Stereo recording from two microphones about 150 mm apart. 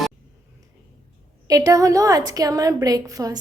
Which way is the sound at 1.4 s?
25° right (ahead or behind).